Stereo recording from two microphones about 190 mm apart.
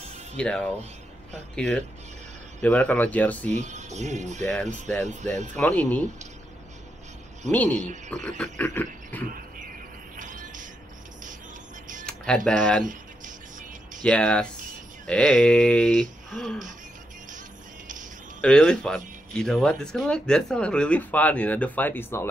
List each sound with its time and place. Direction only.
0.4 s speech: 5° left (ahead or behind)
3.5 s speech: 40° right (ahead or behind)
4.4 s speech: 5° left (ahead or behind)
7.5 s speech: 5° left (ahead or behind)
10.1 s music: 45° right (ahead or behind)
12.1 s speech: 5° left (ahead or behind)
12.8 s a sound: 45° right (ahead or behind)
14.0 s speech: 5° left (ahead or behind)
18.4 s speech: 5° left (ahead or behind)